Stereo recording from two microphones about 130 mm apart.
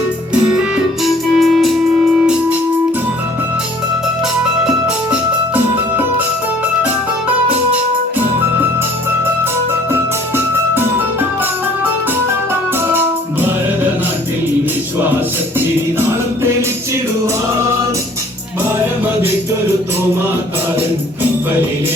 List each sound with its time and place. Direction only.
1.0 s music: centre (ahead or behind)
5.1 s music: 10° right (ahead or behind)
9.9 s music: 15° right (ahead or behind)
16.0 s music: 20° right (ahead or behind)